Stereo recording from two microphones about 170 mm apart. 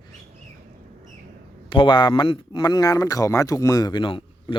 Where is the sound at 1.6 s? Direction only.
30° left (ahead or behind).